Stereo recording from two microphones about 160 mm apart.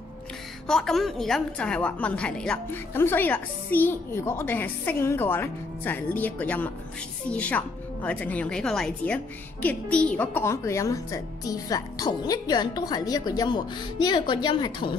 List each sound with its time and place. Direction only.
0.7 s a woman's voice: 5° left (ahead or behind); by 15.0 s 30° left (ahead or behind)